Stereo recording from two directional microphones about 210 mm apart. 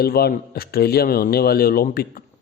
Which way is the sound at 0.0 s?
50° left (ahead or behind).